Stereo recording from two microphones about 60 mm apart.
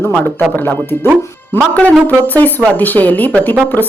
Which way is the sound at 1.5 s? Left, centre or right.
Left.